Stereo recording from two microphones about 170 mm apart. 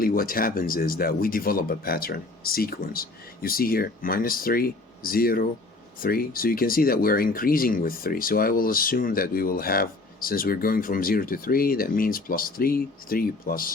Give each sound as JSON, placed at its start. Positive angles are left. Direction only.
{"t": 0.0, "sound": "speech", "side_deg": 55}